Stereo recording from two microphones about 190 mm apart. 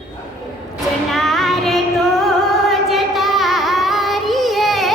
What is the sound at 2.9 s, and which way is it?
Child singing, centre (ahead or behind).